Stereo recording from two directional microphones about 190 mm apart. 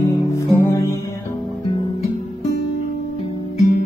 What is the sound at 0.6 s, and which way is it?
Music, 15° left (ahead or behind).